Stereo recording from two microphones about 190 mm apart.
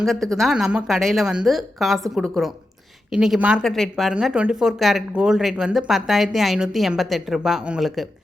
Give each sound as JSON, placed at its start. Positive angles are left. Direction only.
{"t": 0.0, "sound": "speech", "side_deg": 0}